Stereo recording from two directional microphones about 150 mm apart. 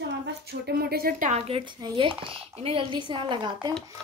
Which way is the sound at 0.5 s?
90° right.